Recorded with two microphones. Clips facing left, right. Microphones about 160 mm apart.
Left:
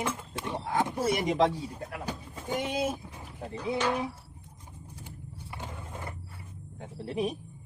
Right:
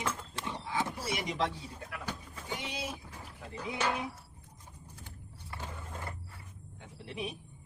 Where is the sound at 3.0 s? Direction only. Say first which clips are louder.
Left 6 dB; 20° left (ahead or behind).